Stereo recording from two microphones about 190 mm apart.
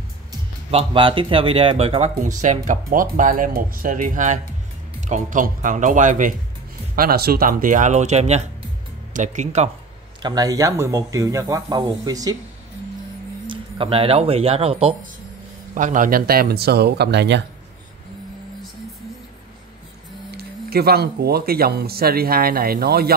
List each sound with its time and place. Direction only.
0.7 s speech: 30° right (ahead or behind)
7.0 s speech: 55° right (ahead or behind); by 9.7 s 35° right (ahead or behind)
10.2 s speech: 20° right (ahead or behind)
13.5 s speech: 30° right (ahead or behind)
15.7 s speech: 45° right (ahead or behind); by 17.4 s 60° right (ahead or behind)
20.3 s speech: 55° right (ahead or behind)